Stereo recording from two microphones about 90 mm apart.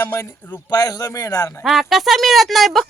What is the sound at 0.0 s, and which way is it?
Speech, 30° left (ahead or behind).